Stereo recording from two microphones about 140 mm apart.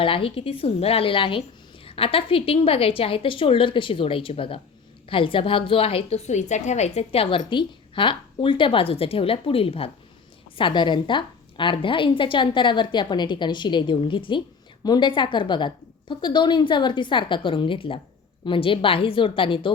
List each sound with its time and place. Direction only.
0.0 s a woman's voice: 40° left (ahead or behind)